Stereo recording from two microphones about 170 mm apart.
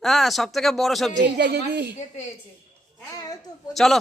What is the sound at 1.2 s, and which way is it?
Speech, 75° right (ahead or behind).